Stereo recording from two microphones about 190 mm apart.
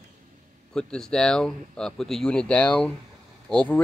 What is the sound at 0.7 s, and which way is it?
Speech, 5° left (ahead or behind).